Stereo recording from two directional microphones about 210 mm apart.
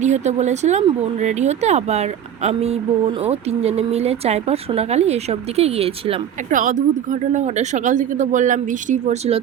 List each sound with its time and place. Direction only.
0.0 s speech: 35° right (ahead or behind)